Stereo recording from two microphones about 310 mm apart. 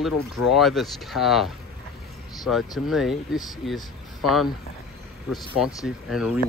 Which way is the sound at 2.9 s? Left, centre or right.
Centre.